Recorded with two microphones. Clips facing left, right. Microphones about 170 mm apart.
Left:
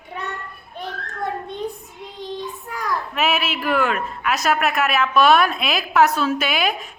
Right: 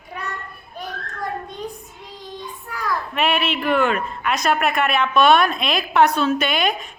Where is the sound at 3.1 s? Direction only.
5° left (ahead or behind).